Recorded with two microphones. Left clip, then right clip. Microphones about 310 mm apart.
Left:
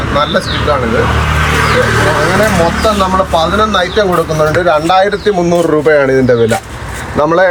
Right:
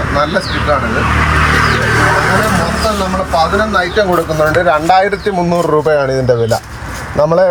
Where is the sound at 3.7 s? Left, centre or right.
Centre.